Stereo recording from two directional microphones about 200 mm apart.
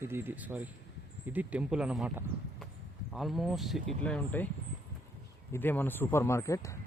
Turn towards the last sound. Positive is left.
turn(degrees=15)  # may be behind; listen again after turning